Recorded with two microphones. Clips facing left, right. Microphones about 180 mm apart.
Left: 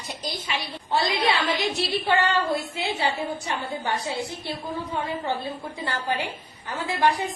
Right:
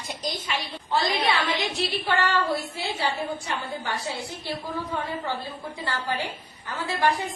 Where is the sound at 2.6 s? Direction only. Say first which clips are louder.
Left 2 dB; 20° left (ahead or behind).